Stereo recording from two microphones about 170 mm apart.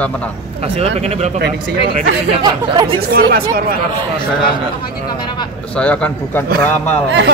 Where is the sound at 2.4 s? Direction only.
30° right (ahead or behind).